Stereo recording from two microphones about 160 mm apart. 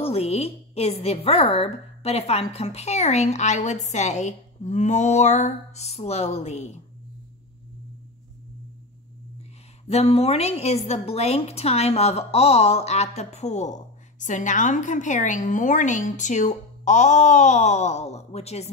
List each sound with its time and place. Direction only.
0.0 s a woman's voice: 40° left (ahead or behind)
9.8 s a woman's voice: 40° left (ahead or behind)